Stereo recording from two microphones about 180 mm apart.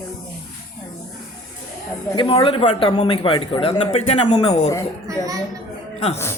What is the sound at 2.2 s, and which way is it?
A man's voice, 25° left (ahead or behind).